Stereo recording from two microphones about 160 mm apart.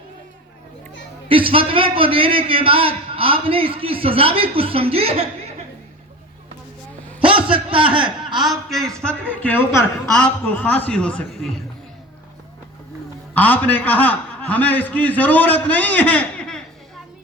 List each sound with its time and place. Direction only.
1.3 s a man's voice: 35° right (ahead or behind)
7.3 s a sound: 10° right (ahead or behind)
8.4 s a man's voice: centre (ahead or behind)
13.3 s a man's voice: 10° left (ahead or behind)